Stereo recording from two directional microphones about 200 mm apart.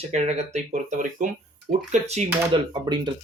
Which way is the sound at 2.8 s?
20° right (ahead or behind).